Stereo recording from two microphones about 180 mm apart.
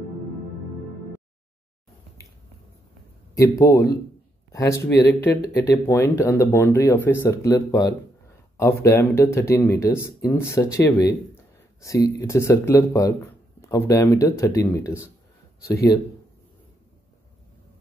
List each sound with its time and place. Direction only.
3.3 s speech: 15° left (ahead or behind)
15.6 s speech: 60° left (ahead or behind)